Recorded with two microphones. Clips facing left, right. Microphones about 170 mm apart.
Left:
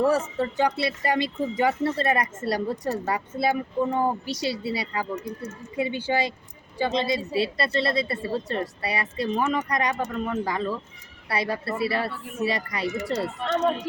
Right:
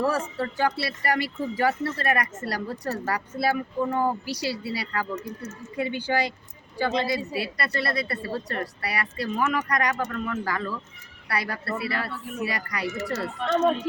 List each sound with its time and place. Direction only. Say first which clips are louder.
0.0 s speech: left 3 dB; 20° left (ahead or behind)